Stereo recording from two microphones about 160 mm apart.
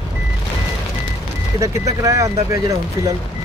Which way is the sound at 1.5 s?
20° right (ahead or behind).